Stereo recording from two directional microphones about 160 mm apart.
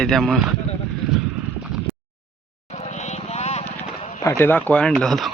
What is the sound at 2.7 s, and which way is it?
Vehicle, 40° left (ahead or behind).